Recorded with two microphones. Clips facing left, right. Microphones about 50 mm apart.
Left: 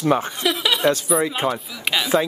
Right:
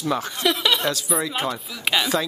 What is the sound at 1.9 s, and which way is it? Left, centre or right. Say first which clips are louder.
Speech: even; centre.